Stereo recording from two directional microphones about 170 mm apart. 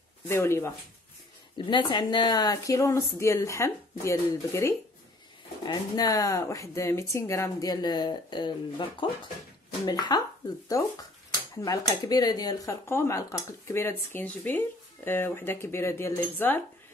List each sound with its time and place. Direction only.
0.3 s speech: 15° left (ahead or behind)
1.7 s speech: 25° left (ahead or behind)
9.8 s speech: 25° left (ahead or behind)